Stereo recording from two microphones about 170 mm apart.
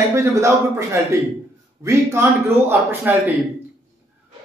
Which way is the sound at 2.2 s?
15° right (ahead or behind).